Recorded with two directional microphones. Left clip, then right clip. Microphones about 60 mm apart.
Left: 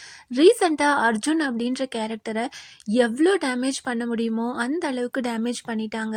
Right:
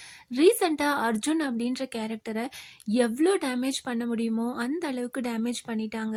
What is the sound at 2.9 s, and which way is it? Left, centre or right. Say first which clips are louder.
A woman's voice: left 4 dB; left.